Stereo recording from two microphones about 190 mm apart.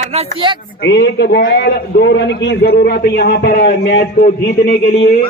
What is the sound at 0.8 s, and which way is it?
A man's voice, 65° left (ahead or behind).